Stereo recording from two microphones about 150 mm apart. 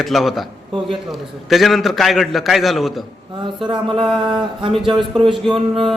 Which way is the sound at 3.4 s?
30° right (ahead or behind).